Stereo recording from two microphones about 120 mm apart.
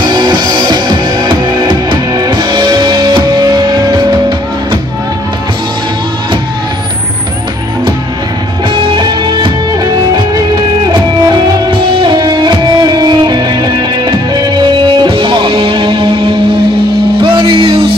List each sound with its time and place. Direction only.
0.0 s music: 35° right (ahead or behind)
8.7 s music: 40° right (ahead or behind)
11.8 s music: 40° right (ahead or behind)